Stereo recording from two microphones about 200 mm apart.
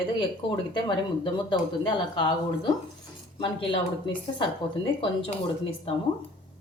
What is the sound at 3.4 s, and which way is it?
Speech, 25° left (ahead or behind).